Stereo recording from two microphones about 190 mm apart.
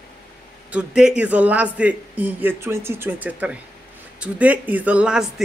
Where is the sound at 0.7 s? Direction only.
5° right (ahead or behind).